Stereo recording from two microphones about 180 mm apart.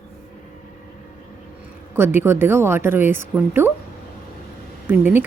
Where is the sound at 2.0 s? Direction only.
15° right (ahead or behind).